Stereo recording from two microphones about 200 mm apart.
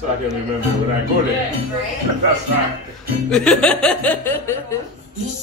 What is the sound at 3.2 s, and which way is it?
Speech, 5° left (ahead or behind).